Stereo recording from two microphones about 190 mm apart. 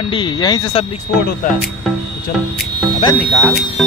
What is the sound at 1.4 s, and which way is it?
Speech, 45° left (ahead or behind).